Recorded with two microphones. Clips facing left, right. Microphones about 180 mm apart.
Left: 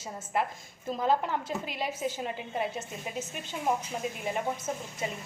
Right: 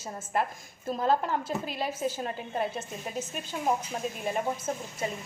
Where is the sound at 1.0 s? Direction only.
20° left (ahead or behind).